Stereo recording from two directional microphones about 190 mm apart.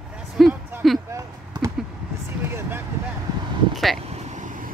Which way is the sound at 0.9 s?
20° right (ahead or behind).